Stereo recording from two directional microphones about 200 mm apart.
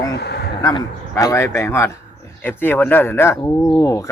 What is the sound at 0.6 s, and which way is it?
A man's voice, 20° left (ahead or behind).